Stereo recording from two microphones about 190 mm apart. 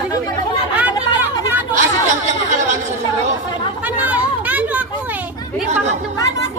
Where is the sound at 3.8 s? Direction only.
10° right (ahead or behind).